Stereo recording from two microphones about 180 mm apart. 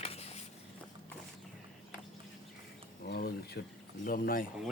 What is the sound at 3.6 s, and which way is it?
Speech, 65° left (ahead or behind).